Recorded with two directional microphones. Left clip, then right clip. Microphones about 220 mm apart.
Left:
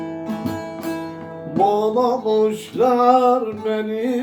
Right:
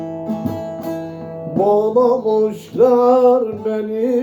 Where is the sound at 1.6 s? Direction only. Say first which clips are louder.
Right 3 dB; 25° left (ahead or behind).